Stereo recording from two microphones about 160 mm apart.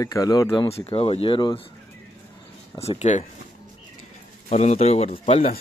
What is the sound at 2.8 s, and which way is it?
Speech, 40° left (ahead or behind).